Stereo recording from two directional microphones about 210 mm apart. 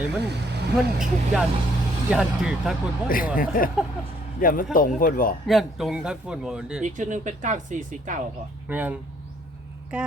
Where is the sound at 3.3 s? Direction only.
40° left (ahead or behind).